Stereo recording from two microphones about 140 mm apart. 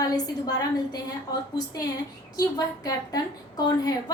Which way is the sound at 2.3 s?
30° left (ahead or behind).